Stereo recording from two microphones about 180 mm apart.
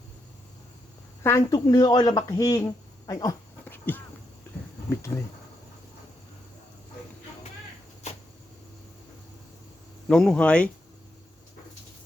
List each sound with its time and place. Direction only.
1.2 s speech: 15° left (ahead or behind)
3.6 s insect: 10° left (ahead or behind)
5.1 s speech: 15° left (ahead or behind)
10.1 s speech: 5° left (ahead or behind)